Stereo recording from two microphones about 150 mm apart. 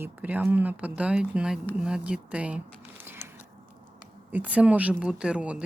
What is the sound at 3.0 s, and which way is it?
Biting, 15° right (ahead or behind).